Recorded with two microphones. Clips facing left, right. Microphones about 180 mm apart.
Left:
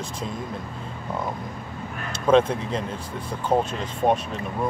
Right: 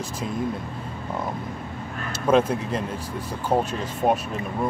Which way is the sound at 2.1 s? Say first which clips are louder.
Left 1 dB; 5° right (ahead or behind).